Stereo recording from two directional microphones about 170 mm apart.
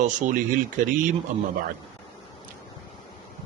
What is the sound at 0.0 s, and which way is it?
Speech, 50° right (ahead or behind).